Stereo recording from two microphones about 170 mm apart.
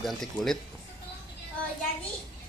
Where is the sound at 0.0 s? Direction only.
Centre (ahead or behind).